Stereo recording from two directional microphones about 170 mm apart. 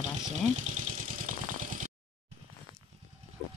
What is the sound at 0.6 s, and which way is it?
Vehicle, 45° right (ahead or behind).